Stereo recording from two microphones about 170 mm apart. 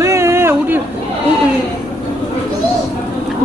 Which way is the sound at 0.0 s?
15° right (ahead or behind).